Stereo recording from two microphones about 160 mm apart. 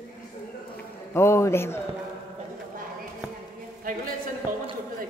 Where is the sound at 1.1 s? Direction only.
15° left (ahead or behind).